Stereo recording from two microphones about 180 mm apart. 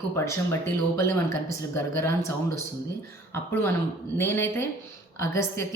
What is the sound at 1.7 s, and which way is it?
Speech, 15° left (ahead or behind).